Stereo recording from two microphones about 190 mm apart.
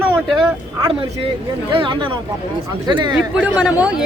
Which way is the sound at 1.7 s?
25° right (ahead or behind).